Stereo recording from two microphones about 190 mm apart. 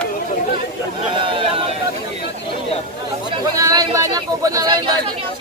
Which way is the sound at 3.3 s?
20° right (ahead or behind).